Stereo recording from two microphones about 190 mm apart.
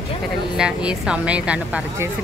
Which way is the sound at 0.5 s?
5° right (ahead or behind).